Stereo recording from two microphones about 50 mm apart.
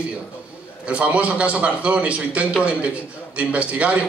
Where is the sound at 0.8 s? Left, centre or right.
Right.